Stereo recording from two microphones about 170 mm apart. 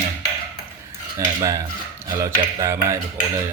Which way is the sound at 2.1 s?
15° right (ahead or behind).